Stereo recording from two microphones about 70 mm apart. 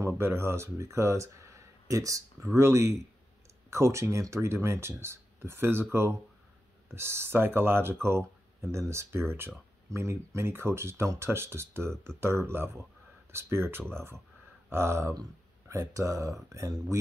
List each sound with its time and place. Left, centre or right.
0.0 s speech: right